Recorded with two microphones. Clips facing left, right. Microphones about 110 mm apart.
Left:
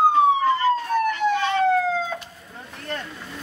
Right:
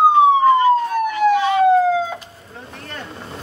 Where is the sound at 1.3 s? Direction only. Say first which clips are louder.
Right 6 dB; 10° right (ahead or behind).